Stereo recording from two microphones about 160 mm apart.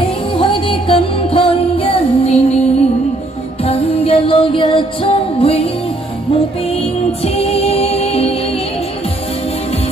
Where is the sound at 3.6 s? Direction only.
35° left (ahead or behind).